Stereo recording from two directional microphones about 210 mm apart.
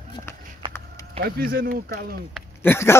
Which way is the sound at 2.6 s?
10° left (ahead or behind).